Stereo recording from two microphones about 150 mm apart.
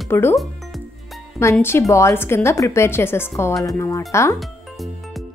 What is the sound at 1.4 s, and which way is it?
Speech, 20° left (ahead or behind).